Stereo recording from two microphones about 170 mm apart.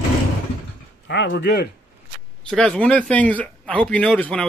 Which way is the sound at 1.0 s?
90° left.